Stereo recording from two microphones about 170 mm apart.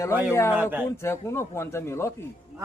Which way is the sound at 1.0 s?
15° left (ahead or behind).